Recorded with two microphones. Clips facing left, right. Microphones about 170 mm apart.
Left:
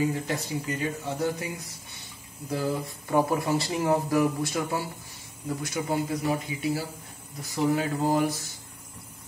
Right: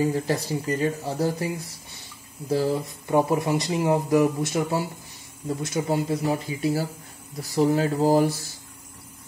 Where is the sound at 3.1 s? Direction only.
20° right (ahead or behind).